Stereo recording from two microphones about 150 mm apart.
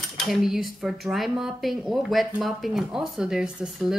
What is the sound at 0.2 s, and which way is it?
Speech, centre (ahead or behind).